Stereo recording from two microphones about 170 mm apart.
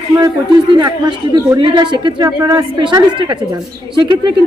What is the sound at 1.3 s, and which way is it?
A man's voice, 25° right (ahead or behind).